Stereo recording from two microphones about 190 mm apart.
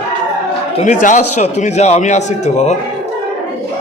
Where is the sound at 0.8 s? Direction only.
40° left (ahead or behind).